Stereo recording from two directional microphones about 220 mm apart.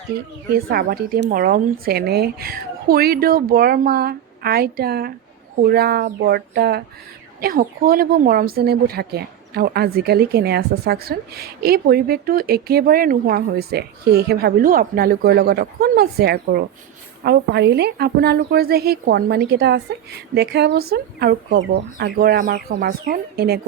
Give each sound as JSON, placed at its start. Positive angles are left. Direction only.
{"t": 0.5, "sound": "speech", "side_deg": -45}